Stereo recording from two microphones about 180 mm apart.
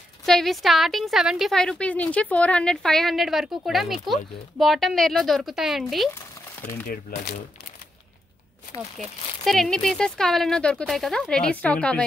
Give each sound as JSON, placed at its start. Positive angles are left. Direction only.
{"t": 0.2, "sound": "a woman's voice", "side_deg": 0}
{"t": 6.9, "sound": "speech", "side_deg": 50}
{"t": 8.9, "sound": "a woman's voice", "side_deg": 0}